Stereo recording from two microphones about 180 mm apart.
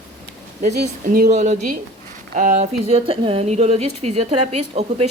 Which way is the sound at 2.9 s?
35° right (ahead or behind).